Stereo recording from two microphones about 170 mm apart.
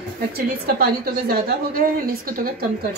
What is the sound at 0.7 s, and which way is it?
A woman's voice, 65° right (ahead or behind).